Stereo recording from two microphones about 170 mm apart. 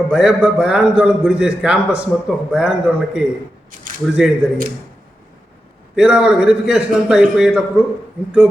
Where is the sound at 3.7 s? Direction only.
55° right (ahead or behind).